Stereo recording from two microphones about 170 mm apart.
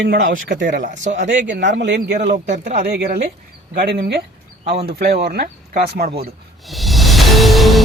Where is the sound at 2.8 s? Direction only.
70° right (ahead or behind).